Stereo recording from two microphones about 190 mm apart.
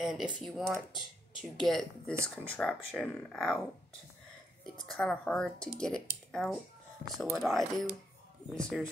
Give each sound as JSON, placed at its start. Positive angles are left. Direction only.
{"t": 0.0, "sound": "speech", "side_deg": 0}
{"t": 4.7, "sound": "speech", "side_deg": 5}